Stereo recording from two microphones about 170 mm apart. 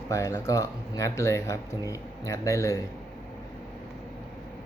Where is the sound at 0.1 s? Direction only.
20° left (ahead or behind).